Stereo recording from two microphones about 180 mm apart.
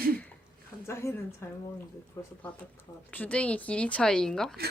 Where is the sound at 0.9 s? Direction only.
15° left (ahead or behind).